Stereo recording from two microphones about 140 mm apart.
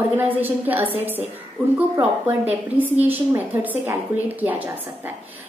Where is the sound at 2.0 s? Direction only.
10° right (ahead or behind).